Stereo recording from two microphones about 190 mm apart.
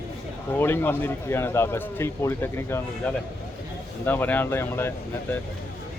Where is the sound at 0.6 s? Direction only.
10° left (ahead or behind).